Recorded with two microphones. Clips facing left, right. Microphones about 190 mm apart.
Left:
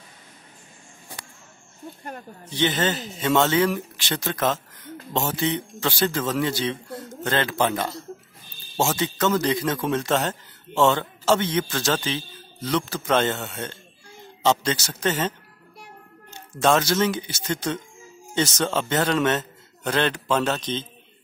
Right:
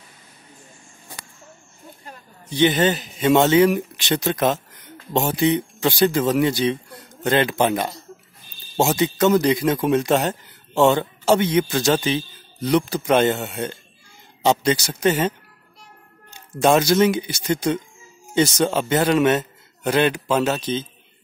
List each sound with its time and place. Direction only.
2.5 s a man's voice: 15° right (ahead or behind)
16.5 s a man's voice: 15° right (ahead or behind)